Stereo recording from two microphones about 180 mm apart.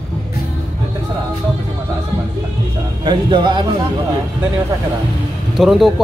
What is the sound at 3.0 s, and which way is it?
Speech, 25° right (ahead or behind).